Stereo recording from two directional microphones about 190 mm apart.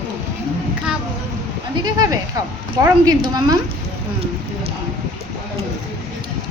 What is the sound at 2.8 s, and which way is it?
Speech, 20° right (ahead or behind).